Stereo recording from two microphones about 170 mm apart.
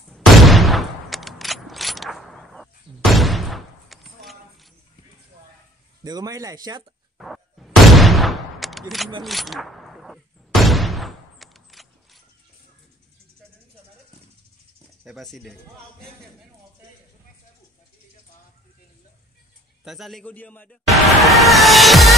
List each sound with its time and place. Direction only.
0.1 s mechanisms: centre (ahead or behind)
6.0 s speech: 20° right (ahead or behind)
7.2 s fusillade: centre (ahead or behind)
9.2 s a sound: centre (ahead or behind)
15.0 s speech: centre (ahead or behind)
19.8 s music: centre (ahead or behind)